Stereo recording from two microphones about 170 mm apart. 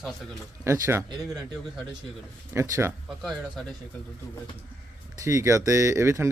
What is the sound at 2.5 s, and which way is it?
Speech, 15° right (ahead or behind).